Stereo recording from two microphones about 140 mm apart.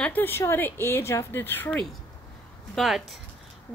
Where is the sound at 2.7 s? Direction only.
Centre (ahead or behind).